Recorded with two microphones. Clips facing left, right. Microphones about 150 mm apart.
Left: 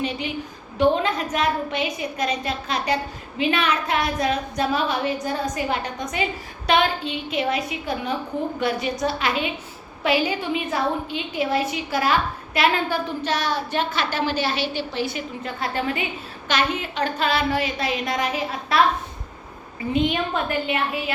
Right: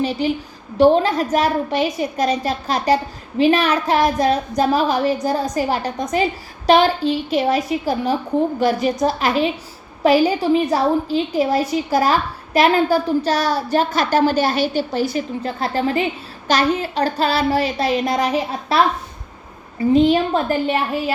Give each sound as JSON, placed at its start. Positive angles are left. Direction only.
{"t": 0.8, "sound": "a woman's voice", "side_deg": -35}
{"t": 19.9, "sound": "a woman's voice", "side_deg": -35}